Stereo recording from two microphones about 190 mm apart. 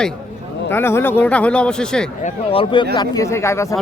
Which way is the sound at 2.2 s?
35° left (ahead or behind).